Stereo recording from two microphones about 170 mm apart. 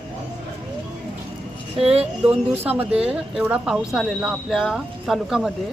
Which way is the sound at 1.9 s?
35° right (ahead or behind).